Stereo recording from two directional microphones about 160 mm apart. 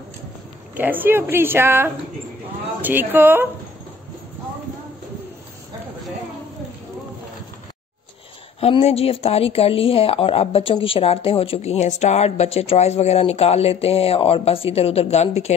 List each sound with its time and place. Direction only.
0.7 s a woman's voice: 10° right (ahead or behind)
8.5 s speech: 40° left (ahead or behind)